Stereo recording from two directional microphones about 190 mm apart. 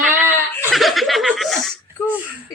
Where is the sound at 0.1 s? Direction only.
10° right (ahead or behind).